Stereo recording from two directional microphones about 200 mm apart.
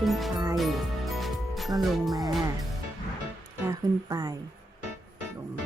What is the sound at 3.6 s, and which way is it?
Speech, 20° right (ahead or behind).